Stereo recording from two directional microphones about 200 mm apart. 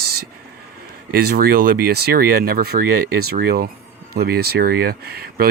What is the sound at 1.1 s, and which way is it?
Speech, 50° right (ahead or behind).